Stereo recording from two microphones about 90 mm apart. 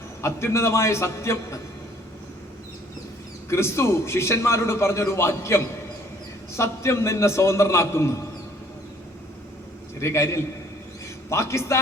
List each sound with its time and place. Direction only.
0.2 s a man's voice: 30° left (ahead or behind)
3.5 s a man's voice: 30° left (ahead or behind)
10.0 s a man's voice: 30° left (ahead or behind)